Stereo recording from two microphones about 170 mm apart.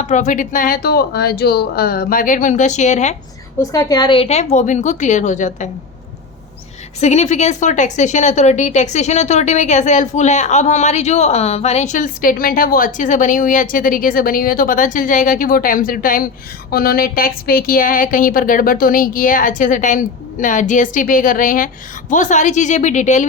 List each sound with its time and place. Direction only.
0.0 s a woman's voice: 45° left (ahead or behind)
3.6 s a woman's voice: 20° left (ahead or behind); by 5.6 s 45° left (ahead or behind)
7.0 s a woman's voice: 40° left (ahead or behind)